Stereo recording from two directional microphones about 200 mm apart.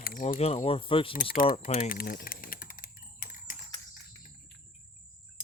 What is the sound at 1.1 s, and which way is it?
Speech, 45° left (ahead or behind).